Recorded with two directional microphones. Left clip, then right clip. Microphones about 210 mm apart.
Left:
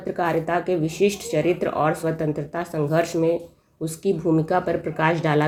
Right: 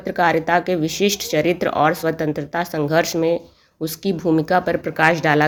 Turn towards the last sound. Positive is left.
turn(degrees=-25)  # may be behind; listen again after turning